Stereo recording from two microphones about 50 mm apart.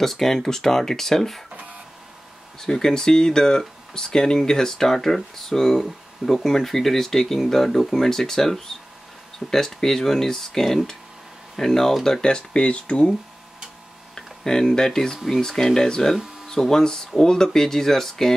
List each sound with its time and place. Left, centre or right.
0.0 s speech: centre
2.6 s speech: centre
14.1 s speech: centre